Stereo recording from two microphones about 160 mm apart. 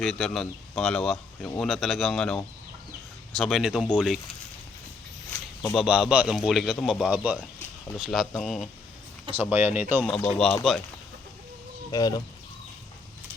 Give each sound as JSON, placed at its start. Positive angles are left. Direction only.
{"t": 0.0, "sound": "speech", "side_deg": 5}
{"t": 5.7, "sound": "speech", "side_deg": -5}
{"t": 9.3, "sound": "speech", "side_deg": -10}
{"t": 10.0, "sound": "speech", "side_deg": 10}
{"t": 11.9, "sound": "speech", "side_deg": 25}